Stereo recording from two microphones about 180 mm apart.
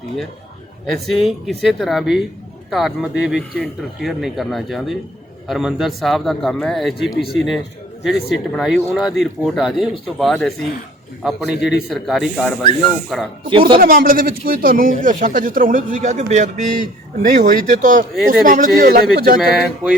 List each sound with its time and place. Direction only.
0.9 s speech: centre (ahead or behind)
13.5 s speech: 30° right (ahead or behind)
13.7 s a man's voice: 50° right (ahead or behind)
19.4 s speech: centre (ahead or behind)